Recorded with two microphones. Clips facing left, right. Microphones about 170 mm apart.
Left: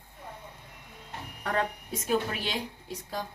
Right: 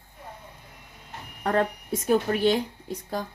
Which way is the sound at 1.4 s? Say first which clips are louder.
Right 6 dB; 45° right (ahead or behind).